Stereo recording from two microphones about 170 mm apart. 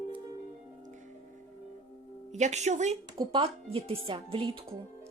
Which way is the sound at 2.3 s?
45° right (ahead or behind).